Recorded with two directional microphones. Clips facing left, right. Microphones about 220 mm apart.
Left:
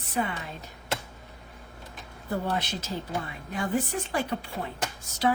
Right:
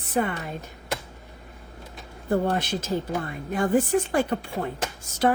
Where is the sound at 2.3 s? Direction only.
50° right (ahead or behind).